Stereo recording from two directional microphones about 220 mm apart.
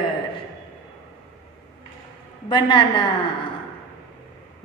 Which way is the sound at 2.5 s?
20° left (ahead or behind).